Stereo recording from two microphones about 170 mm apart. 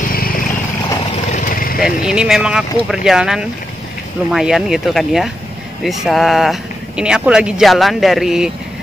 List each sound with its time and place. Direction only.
0.1 s vehicle: 60° left (ahead or behind)
1.3 s a sound: 55° left (ahead or behind)
1.8 s speech: 5° right (ahead or behind)